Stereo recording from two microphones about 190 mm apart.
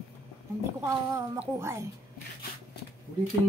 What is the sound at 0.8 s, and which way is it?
A man's voice, 15° right (ahead or behind).